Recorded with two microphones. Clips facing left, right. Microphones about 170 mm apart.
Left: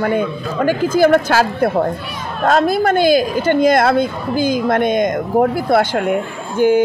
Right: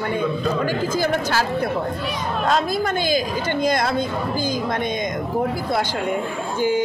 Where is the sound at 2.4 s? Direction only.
55° left (ahead or behind).